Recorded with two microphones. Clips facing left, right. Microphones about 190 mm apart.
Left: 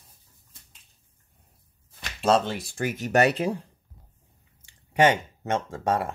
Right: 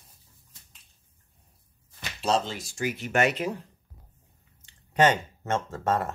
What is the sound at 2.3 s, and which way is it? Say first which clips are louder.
Speech: left 4 dB; 60° left (ahead or behind).